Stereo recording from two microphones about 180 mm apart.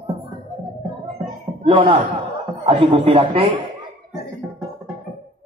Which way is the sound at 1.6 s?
30° right (ahead or behind).